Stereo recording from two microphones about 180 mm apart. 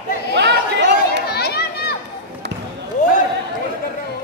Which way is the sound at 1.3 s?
60° left (ahead or behind).